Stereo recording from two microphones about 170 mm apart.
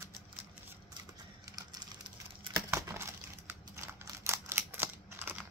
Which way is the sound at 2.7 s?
15° right (ahead or behind).